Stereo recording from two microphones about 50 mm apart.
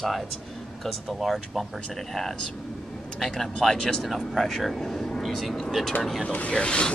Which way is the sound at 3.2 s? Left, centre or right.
Centre.